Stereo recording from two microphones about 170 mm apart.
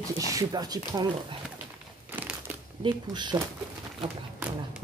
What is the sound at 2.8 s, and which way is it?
Speech, 25° right (ahead or behind).